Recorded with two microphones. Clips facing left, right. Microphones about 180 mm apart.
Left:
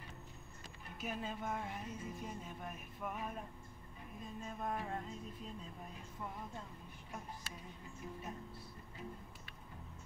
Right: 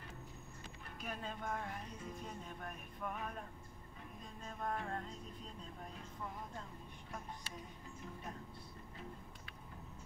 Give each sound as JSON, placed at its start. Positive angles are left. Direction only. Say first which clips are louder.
{"t": 1.0, "sound": "music", "louder": "left 2 dB", "side_deg": 5}